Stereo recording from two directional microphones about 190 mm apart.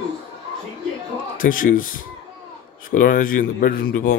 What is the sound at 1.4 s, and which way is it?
Speech, 45° left (ahead or behind).